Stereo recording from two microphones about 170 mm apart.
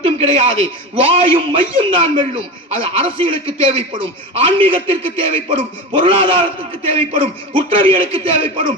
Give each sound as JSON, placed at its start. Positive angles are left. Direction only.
{"t": 0.0, "sound": "a man's voice", "side_deg": -35}